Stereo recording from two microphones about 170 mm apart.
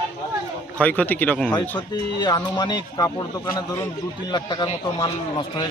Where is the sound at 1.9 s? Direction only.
25° left (ahead or behind).